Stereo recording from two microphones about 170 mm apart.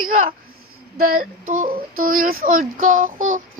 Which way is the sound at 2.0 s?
55° right (ahead or behind).